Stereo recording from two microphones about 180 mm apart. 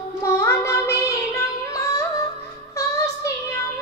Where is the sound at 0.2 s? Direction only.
15° left (ahead or behind).